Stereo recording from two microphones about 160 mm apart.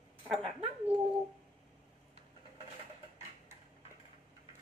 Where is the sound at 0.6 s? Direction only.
35° right (ahead or behind).